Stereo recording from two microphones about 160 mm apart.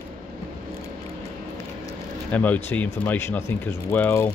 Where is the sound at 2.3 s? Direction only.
10° left (ahead or behind).